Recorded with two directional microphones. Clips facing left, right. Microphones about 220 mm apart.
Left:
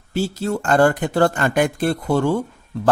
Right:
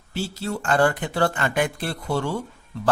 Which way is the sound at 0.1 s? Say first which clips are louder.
Left 6 dB; 45° left (ahead or behind).